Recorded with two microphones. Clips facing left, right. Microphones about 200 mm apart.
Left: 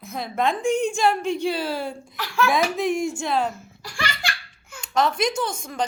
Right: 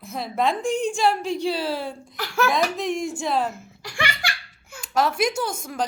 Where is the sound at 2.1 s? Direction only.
45° right (ahead or behind).